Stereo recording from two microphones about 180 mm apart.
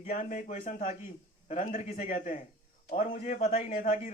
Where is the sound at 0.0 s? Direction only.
45° left (ahead or behind).